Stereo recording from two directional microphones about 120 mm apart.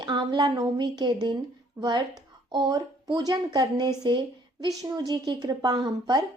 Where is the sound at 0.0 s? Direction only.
40° right (ahead or behind).